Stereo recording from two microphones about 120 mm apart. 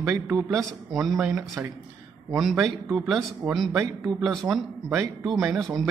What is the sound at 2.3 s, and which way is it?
Speech, 5° right (ahead or behind).